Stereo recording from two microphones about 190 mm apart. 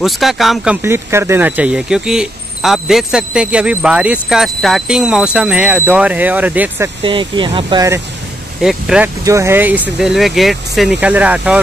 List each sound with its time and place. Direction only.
0.0 s speech: centre (ahead or behind)
0.8 s speech: 15° right (ahead or behind)
7.0 s speech: 25° right (ahead or behind)
8.6 s speech: 5° right (ahead or behind)
9.2 s speech: 15° right (ahead or behind)